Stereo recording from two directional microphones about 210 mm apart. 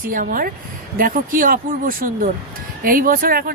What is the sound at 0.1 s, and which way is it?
Speech, 40° right (ahead or behind).